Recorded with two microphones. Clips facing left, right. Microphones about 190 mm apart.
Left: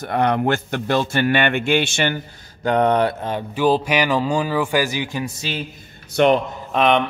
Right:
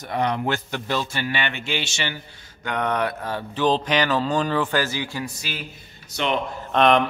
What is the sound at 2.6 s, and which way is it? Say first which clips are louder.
Mantra: left 7 dB; 35° left (ahead or behind).